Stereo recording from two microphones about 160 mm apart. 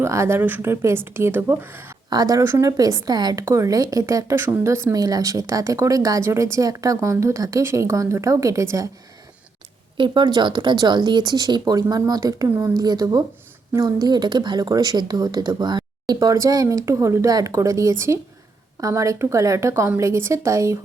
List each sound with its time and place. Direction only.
0.0 s speech: 15° right (ahead or behind)
2.0 s speech: 25° right (ahead or behind)
10.0 s speech: 30° right (ahead or behind)